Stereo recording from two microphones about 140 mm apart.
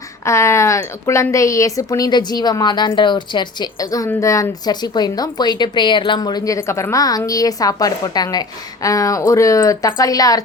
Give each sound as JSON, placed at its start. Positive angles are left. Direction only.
{"t": 0.3, "sound": "a woman's voice", "side_deg": 20}